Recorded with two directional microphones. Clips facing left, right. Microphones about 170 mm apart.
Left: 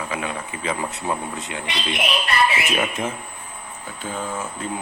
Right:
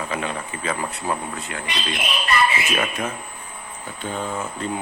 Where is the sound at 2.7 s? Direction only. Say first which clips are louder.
Left 1 dB; 20° left (ahead or behind).